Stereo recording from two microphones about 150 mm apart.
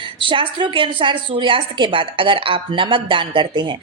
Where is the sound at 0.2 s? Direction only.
35° right (ahead or behind).